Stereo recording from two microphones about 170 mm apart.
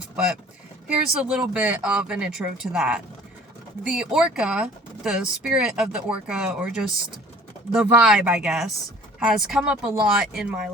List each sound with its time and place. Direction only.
0.9 s speech: 5° right (ahead or behind)